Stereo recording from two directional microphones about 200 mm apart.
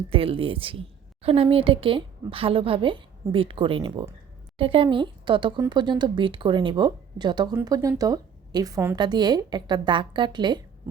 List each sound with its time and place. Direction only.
0.1 s speech: 25° right (ahead or behind)